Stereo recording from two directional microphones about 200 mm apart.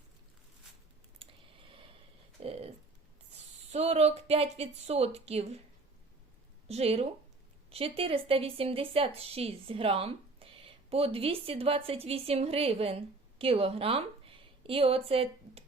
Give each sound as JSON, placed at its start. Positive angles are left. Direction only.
{"t": 2.4, "sound": "speech", "side_deg": -30}
{"t": 6.7, "sound": "a woman's voice", "side_deg": -30}